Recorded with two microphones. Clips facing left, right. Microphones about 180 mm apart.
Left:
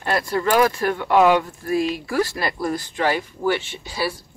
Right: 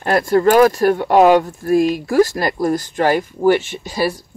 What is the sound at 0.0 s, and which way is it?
Speech, 50° right (ahead or behind).